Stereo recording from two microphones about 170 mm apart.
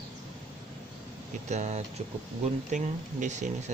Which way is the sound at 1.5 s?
40° right (ahead or behind).